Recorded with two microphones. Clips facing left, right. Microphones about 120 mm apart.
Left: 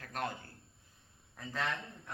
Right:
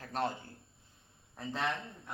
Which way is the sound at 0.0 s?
30° right (ahead or behind).